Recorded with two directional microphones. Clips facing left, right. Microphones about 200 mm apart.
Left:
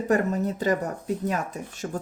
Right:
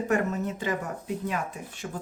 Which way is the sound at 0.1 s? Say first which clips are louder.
Left 5 dB; 35° left (ahead or behind).